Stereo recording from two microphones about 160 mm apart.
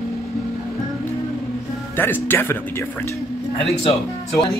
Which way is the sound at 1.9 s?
10° left (ahead or behind).